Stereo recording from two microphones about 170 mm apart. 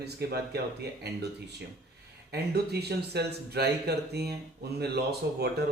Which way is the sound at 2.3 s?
70° right (ahead or behind).